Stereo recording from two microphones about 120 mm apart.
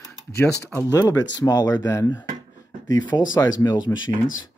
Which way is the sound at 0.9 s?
30° left (ahead or behind).